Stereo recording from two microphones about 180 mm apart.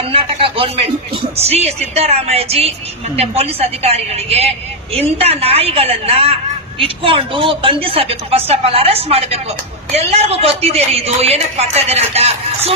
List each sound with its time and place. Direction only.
0.1 s speech: 30° right (ahead or behind)